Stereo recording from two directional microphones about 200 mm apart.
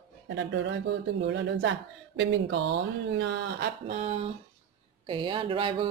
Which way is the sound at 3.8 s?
35° right (ahead or behind).